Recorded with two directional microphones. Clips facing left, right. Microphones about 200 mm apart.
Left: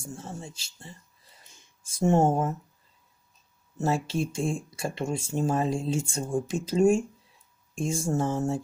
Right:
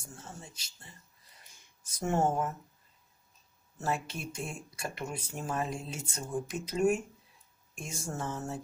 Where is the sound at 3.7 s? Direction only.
25° left (ahead or behind).